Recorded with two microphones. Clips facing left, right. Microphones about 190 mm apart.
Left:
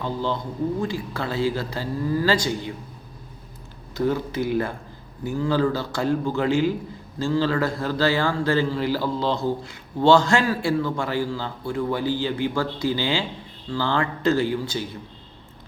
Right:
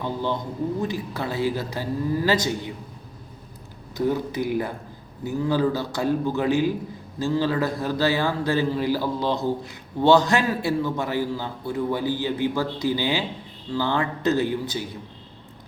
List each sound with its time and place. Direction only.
0.0 s a man's voice: 15° right (ahead or behind)
3.9 s a man's voice: 15° right (ahead or behind)